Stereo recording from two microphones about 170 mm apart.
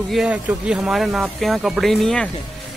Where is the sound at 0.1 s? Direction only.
5° right (ahead or behind).